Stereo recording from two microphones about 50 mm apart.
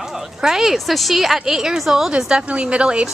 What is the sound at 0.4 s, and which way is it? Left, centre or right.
A woman's voice, centre.